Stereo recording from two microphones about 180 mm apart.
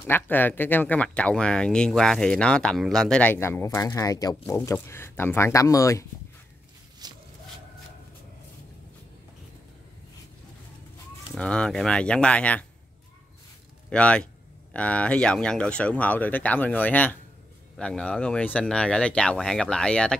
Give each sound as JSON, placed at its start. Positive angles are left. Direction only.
{"t": 0.0, "sound": "speech", "side_deg": 10}
{"t": 7.0, "sound": "a sound", "side_deg": -20}
{"t": 11.3, "sound": "speech", "side_deg": 5}
{"t": 13.8, "sound": "speech", "side_deg": 5}